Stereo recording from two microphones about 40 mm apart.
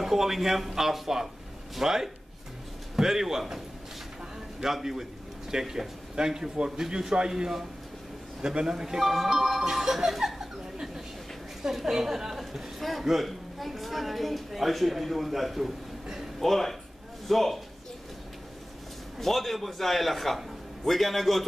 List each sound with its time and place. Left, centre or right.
0.0 s a man's voice: centre
16.3 s a man's voice: centre
19.1 s a man's voice: centre